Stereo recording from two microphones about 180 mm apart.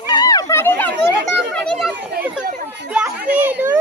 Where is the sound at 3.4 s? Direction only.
10° right (ahead or behind).